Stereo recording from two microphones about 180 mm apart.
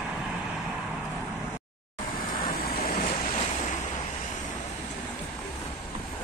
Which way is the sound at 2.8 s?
45° left (ahead or behind).